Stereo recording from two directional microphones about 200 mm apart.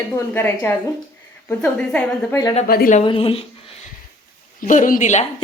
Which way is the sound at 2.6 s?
45° left (ahead or behind).